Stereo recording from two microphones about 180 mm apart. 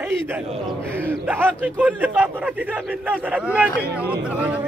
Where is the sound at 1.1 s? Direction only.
10° right (ahead or behind).